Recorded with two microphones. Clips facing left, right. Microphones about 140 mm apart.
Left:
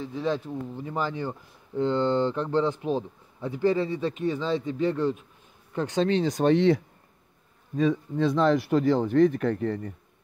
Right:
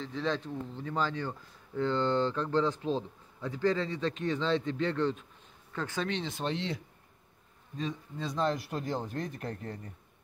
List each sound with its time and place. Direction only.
0.0 s speech: 10° left (ahead or behind)
6.0 s speech: 40° left (ahead or behind)
6.4 s speech: 60° left (ahead or behind)